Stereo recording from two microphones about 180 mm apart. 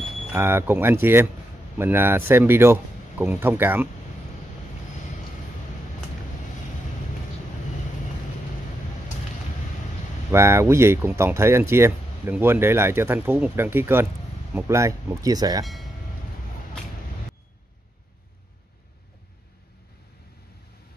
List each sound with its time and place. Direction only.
0.3 s speech: 15° right (ahead or behind)
10.3 s speech: 15° right (ahead or behind)
15.6 s speech: centre (ahead or behind)